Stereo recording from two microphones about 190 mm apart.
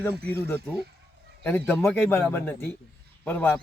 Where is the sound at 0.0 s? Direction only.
10° left (ahead or behind).